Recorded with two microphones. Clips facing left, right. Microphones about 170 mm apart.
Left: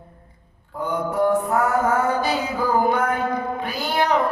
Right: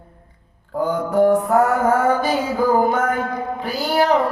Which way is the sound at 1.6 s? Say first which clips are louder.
Right 3 dB; 55° right (ahead or behind).